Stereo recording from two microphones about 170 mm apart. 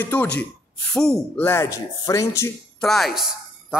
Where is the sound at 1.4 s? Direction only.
15° left (ahead or behind).